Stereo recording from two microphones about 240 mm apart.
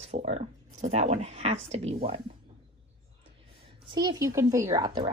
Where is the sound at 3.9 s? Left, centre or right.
Centre.